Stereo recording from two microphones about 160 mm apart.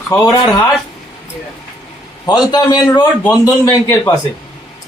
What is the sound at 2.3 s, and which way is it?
A man's voice, 25° left (ahead or behind).